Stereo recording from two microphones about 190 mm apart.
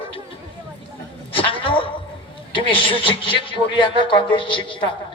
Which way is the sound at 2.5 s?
25° left (ahead or behind).